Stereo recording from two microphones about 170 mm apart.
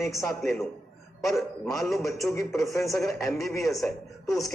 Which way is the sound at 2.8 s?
Centre (ahead or behind).